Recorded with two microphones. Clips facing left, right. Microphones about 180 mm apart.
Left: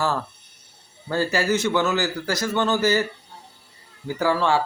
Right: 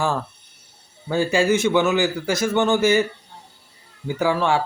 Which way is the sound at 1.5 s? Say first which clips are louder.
Right 3 dB; 10° right (ahead or behind).